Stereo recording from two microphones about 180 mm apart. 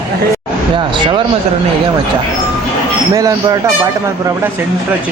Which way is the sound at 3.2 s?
20° right (ahead or behind).